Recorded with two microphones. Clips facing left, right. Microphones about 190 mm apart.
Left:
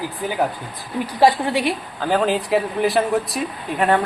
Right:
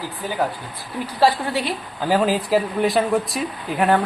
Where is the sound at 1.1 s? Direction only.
15° left (ahead or behind).